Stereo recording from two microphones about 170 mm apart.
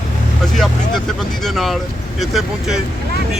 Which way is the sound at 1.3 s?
Centre (ahead or behind).